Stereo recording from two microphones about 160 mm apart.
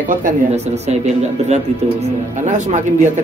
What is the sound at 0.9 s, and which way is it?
Speech, 45° right (ahead or behind).